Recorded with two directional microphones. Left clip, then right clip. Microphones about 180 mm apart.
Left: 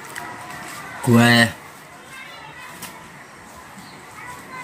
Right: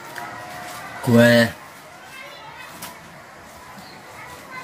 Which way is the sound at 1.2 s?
15° left (ahead or behind).